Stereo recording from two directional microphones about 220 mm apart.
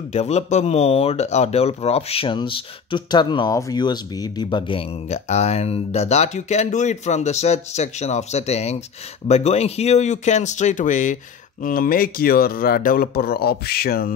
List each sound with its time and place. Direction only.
0.1 s a man's voice: 30° left (ahead or behind)